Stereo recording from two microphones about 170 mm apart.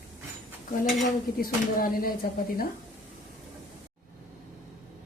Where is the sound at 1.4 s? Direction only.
60° left (ahead or behind).